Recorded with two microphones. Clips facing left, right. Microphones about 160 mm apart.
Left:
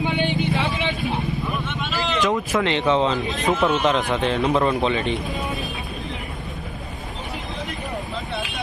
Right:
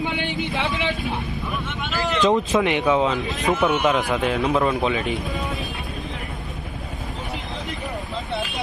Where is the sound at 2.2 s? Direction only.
20° right (ahead or behind); by 5.7 s centre (ahead or behind).